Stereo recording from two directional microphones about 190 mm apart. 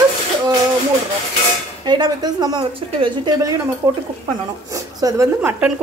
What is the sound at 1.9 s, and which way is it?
A woman's voice, 20° right (ahead or behind).